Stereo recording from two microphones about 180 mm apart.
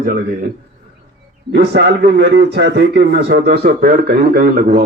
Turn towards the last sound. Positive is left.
turn(degrees=-55)  # may be behind; listen again after turning